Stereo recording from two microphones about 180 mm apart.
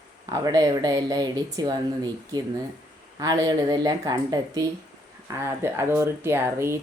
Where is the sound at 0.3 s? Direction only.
20° right (ahead or behind).